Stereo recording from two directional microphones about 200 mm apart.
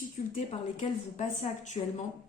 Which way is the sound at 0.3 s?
35° left (ahead or behind).